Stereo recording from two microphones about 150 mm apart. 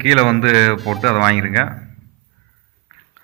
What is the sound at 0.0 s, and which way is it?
Speech, 40° left (ahead or behind).